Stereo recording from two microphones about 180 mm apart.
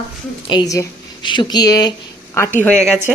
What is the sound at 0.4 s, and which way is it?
A woman's voice, 25° left (ahead or behind).